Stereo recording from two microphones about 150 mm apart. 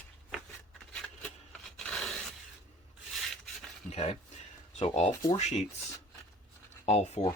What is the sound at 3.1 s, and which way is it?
Rub, centre (ahead or behind).